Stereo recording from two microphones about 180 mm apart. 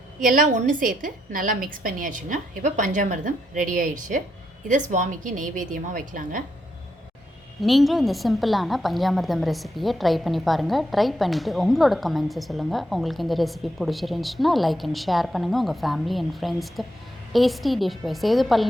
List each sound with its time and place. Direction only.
0.2 s a woman's voice: 45° right (ahead or behind)
7.6 s a woman's voice: centre (ahead or behind)